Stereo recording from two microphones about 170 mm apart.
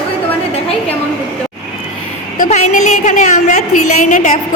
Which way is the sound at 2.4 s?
45° left (ahead or behind).